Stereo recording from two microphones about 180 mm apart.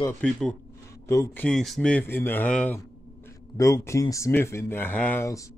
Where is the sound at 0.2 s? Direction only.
5° left (ahead or behind).